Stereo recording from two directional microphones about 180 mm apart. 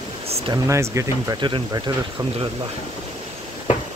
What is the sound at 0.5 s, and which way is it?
Speech, 15° right (ahead or behind).